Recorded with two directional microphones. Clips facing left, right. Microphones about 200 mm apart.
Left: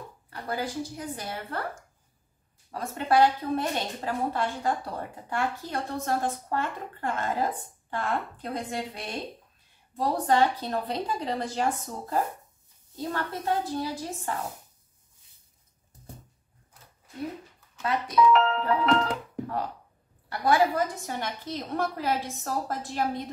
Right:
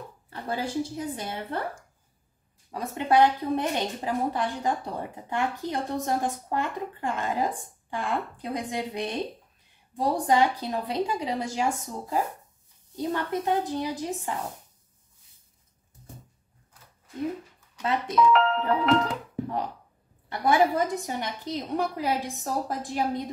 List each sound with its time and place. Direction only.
0.3 s a woman's voice: 25° right (ahead or behind)
2.7 s a woman's voice: 15° right (ahead or behind)
18.1 s speech: centre (ahead or behind)
20.2 s a woman's voice: 25° right (ahead or behind)